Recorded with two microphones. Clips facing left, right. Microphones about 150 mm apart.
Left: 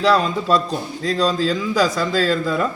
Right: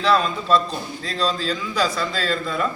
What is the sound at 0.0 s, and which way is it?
A man's voice, 40° left (ahead or behind).